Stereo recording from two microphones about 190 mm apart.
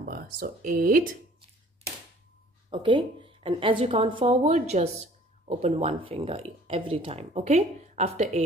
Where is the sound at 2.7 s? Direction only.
25° right (ahead or behind).